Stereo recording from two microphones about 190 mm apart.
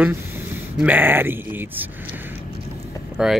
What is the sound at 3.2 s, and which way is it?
Speech, 5° right (ahead or behind).